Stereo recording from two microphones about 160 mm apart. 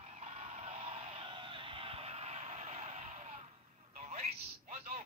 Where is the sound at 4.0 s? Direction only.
45° right (ahead or behind).